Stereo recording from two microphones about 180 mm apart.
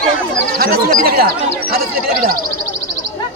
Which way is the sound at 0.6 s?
55° right (ahead or behind).